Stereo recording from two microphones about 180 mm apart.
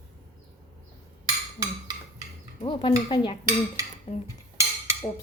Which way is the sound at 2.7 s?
25° left (ahead or behind).